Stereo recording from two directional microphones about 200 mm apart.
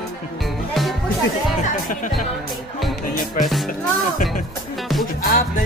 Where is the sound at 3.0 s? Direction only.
40° left (ahead or behind).